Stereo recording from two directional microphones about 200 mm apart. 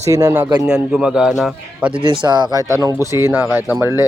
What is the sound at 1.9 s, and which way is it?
Speech, 25° right (ahead or behind).